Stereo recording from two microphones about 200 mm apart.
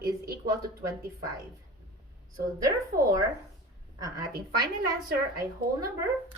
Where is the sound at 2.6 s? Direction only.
15° right (ahead or behind).